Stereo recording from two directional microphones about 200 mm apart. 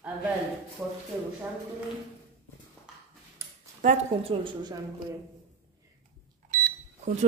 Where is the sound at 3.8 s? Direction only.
40° right (ahead or behind).